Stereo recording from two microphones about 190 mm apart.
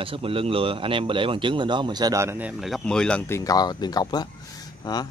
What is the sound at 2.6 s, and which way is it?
Speech, centre (ahead or behind).